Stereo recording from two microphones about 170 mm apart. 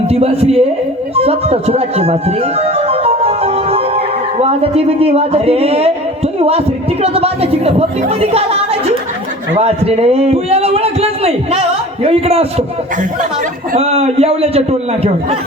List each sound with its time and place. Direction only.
0.1 s a man's voice: 35° right (ahead or behind)